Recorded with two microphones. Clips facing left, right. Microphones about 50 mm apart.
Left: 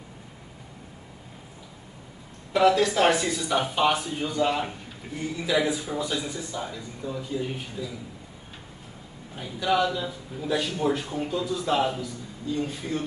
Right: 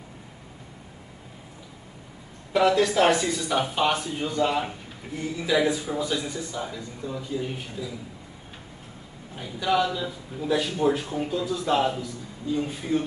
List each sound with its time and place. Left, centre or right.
2.5 s speech: centre
9.3 s speech: centre
12.4 s a man's voice: centre